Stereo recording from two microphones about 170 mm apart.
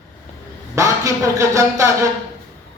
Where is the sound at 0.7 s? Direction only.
20° right (ahead or behind).